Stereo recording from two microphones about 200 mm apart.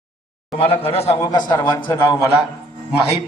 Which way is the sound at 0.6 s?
30° left (ahead or behind).